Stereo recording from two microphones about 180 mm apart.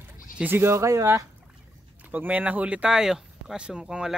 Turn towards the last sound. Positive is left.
turn(degrees=-5)  # may be behind; listen again after turning